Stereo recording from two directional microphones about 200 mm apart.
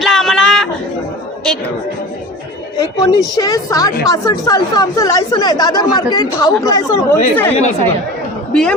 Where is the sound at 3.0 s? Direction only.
20° left (ahead or behind).